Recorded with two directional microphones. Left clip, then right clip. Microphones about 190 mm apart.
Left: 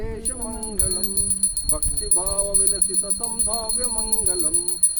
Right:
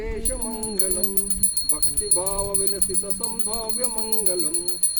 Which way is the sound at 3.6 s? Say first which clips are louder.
Left 1 dB; 20° left (ahead or behind).